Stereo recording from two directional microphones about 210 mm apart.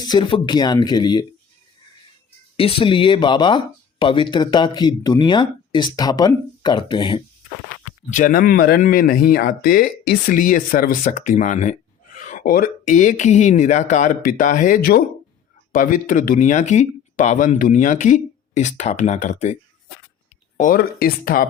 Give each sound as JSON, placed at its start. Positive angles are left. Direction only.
{"t": 0.0, "sound": "speech", "side_deg": 20}
{"t": 2.6, "sound": "speech", "side_deg": 25}
{"t": 8.1, "sound": "speech", "side_deg": 40}
{"t": 20.6, "sound": "speech", "side_deg": 40}